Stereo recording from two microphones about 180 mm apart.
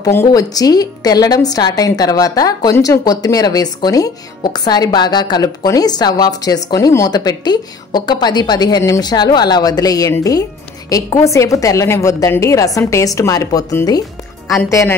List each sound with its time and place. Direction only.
0.0 s a woman's voice: 15° left (ahead or behind)